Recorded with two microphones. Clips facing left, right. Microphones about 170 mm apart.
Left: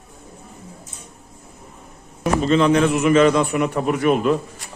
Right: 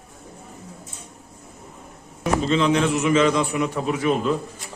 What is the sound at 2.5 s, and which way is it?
A man's voice, 55° left (ahead or behind).